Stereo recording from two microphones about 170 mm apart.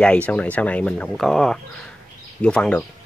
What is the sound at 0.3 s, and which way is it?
Speech, 10° left (ahead or behind).